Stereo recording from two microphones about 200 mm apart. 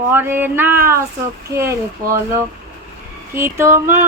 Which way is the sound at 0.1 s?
10° right (ahead or behind).